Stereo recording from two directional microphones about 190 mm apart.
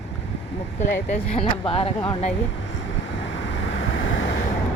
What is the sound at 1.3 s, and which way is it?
Speech, 30° left (ahead or behind).